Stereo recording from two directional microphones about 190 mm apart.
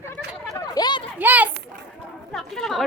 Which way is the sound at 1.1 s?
10° right (ahead or behind).